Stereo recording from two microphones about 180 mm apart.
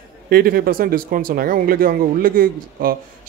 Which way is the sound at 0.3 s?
55° right (ahead or behind).